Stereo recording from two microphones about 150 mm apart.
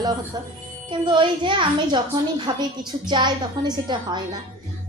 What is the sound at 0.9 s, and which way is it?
A woman's voice, 30° right (ahead or behind).